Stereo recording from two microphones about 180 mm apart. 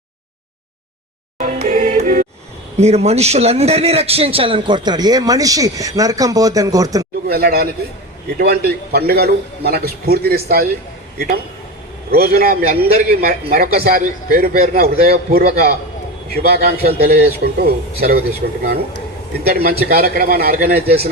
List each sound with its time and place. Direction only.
1.4 s music: 45° right (ahead or behind)
2.7 s a man's voice: 35° right (ahead or behind); by 7.1 s 20° right (ahead or behind)
7.3 s a man's voice: 60° right (ahead or behind)
12.1 s a man's voice: 55° right (ahead or behind)